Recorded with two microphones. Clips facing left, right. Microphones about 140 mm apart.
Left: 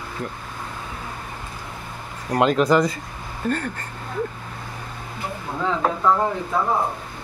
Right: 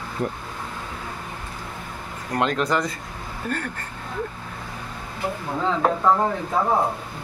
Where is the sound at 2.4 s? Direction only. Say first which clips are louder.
Left 6 dB; 5° left (ahead or behind).